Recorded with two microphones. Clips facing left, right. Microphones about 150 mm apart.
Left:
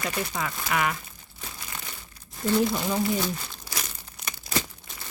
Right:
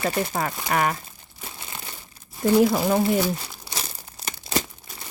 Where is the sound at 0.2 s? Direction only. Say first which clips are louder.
Right 5 dB; 45° right (ahead or behind).